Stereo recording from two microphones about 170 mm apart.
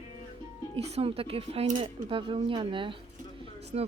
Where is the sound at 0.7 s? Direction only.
35° right (ahead or behind).